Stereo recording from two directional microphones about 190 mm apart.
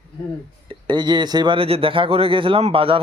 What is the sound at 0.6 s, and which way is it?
Speech, 25° right (ahead or behind).